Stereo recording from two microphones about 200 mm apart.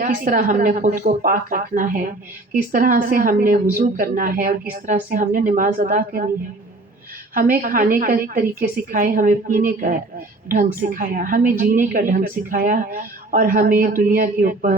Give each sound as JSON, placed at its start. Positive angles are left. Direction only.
{"t": 0.0, "sound": "a woman's voice", "side_deg": -45}
{"t": 7.5, "sound": "a woman's voice", "side_deg": -45}